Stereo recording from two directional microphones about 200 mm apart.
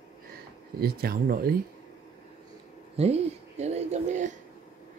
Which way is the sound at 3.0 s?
30° right (ahead or behind).